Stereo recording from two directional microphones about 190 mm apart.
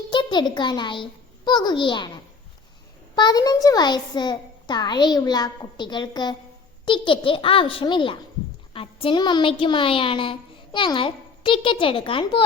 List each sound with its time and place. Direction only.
0.1 s a child's voice: 25° left (ahead or behind)
3.2 s a child's voice: 20° left (ahead or behind)